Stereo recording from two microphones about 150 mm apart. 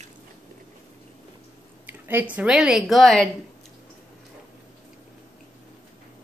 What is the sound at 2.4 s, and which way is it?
Speech, 5° right (ahead or behind).